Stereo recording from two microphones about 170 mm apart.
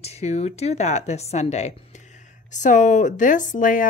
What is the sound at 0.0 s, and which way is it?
Speech, 40° left (ahead or behind).